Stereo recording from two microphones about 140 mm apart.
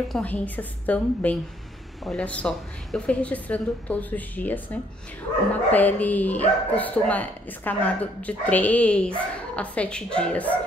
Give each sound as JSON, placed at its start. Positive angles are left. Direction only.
{"t": 0.1, "sound": "speech", "side_deg": 10}